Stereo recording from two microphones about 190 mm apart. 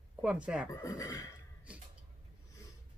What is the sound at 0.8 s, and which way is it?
Speech, 20° left (ahead or behind).